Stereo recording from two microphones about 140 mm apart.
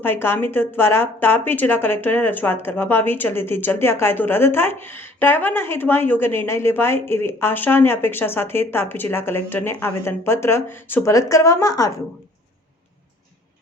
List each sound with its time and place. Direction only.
0.0 s speech: 15° left (ahead or behind)